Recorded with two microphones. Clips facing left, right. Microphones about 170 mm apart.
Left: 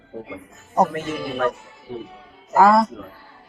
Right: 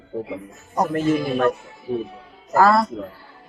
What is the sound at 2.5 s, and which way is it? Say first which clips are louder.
Speech: left 1 dB; 15° left (ahead or behind).